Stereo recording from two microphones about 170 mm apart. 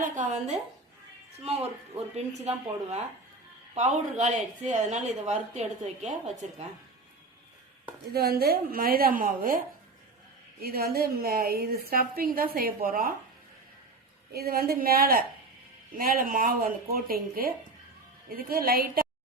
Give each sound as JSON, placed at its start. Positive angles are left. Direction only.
{"t": 0.0, "sound": "a woman's voice", "side_deg": -50}
{"t": 2.1, "sound": "a woman's voice", "side_deg": -40}
{"t": 8.1, "sound": "a woman's voice", "side_deg": -65}
{"t": 10.6, "sound": "a woman's voice", "side_deg": -65}
{"t": 14.3, "sound": "a woman's voice", "side_deg": -65}